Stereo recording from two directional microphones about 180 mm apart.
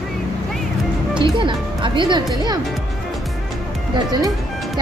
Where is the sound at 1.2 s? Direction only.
25° right (ahead or behind).